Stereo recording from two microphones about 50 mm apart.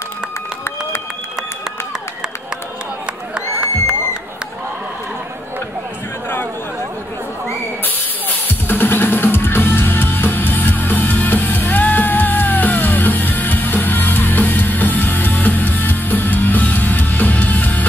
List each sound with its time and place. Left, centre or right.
3.3 s crowd: centre
8.5 s music: left